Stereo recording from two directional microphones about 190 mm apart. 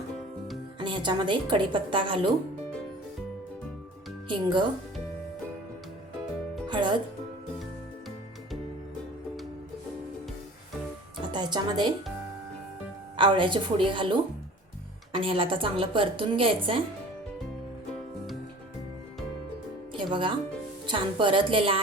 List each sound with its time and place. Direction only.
0.8 s a woman's voice: 25° right (ahead or behind)
4.3 s a woman's voice: 25° right (ahead or behind)
6.7 s speech: 25° right (ahead or behind)
11.3 s a woman's voice: 25° right (ahead or behind)
13.1 s a woman's voice: 25° right (ahead or behind)
19.9 s music: 25° right (ahead or behind)
20.8 s a woman's voice: 25° right (ahead or behind)